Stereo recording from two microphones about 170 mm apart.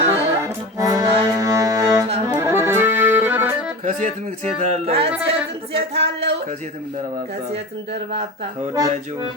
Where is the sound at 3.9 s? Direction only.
45° right (ahead or behind).